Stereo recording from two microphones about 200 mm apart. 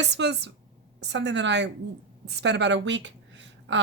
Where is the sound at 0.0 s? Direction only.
60° right (ahead or behind).